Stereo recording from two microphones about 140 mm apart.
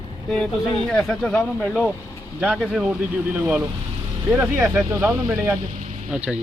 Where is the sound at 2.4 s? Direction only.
5° right (ahead or behind); by 5.4 s 20° right (ahead or behind).